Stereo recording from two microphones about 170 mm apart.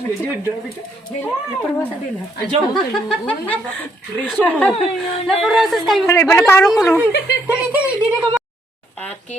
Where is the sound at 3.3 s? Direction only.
10° left (ahead or behind).